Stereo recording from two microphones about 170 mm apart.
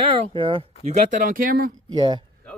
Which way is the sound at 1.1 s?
50° right (ahead or behind).